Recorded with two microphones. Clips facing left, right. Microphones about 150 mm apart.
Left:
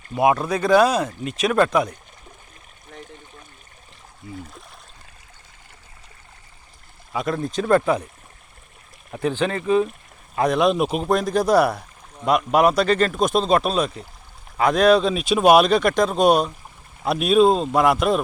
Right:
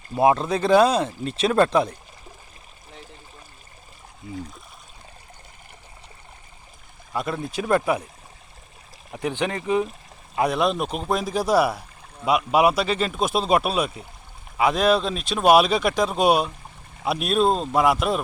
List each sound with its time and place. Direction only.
0.2 s speech: 25° right (ahead or behind)
7.1 s speech: centre (ahead or behind)
9.2 s speech: 15° right (ahead or behind)
10.3 s speech: 5° right (ahead or behind)